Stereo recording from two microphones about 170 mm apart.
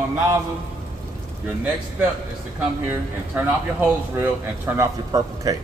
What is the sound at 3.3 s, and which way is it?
Speech, 10° right (ahead or behind).